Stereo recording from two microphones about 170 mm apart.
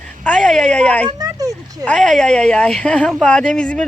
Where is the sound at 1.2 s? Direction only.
20° right (ahead or behind).